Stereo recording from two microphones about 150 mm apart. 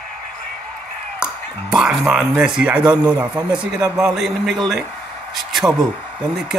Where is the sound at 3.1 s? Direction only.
5° right (ahead or behind).